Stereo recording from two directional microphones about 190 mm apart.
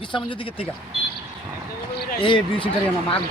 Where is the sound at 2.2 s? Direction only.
25° left (ahead or behind).